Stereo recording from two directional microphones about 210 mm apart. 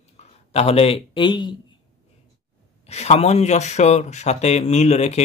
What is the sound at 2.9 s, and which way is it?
Speech, 30° left (ahead or behind).